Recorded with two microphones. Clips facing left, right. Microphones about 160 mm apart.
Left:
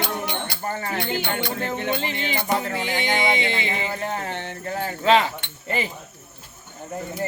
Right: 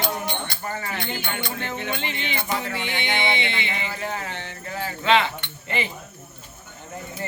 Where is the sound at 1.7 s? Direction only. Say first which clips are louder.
Left 4 dB; 45° left (ahead or behind).